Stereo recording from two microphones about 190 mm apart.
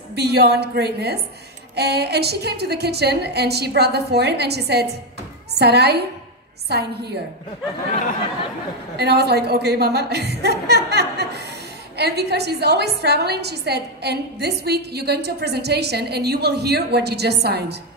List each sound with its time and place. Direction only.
0.1 s a woman's voice: 60° right (ahead or behind)
8.9 s a woman's voice: 60° right (ahead or behind)